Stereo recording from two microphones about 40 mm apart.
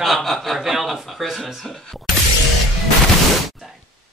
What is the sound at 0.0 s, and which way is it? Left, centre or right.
Speech, centre.